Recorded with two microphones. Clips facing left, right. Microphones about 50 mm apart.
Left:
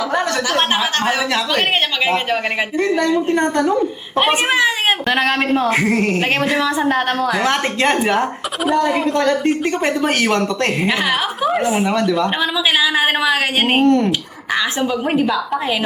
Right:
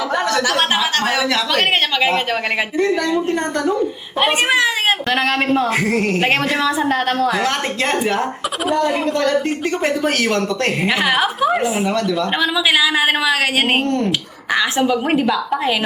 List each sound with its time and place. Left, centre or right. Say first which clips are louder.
0.8 s a man's voice: even; centre
8.6 s speech: left 2 dB; centre
10.2 s a man's voice: left 1 dB; centre
10.8 s a man's voice: right 1 dB; centre
14.5 s speech: right 2 dB; centre